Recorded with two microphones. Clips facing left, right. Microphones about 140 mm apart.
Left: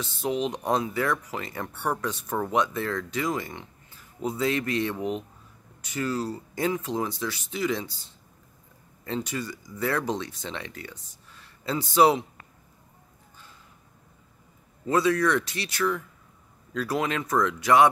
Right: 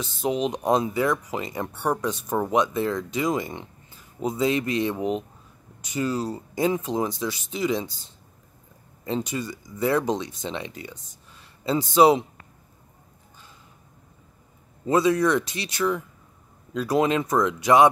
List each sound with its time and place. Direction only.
0.0 s speech: 20° right (ahead or behind)
14.9 s speech: 20° right (ahead or behind)